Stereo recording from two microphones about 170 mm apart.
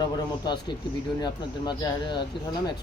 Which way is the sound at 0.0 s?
25° left (ahead or behind).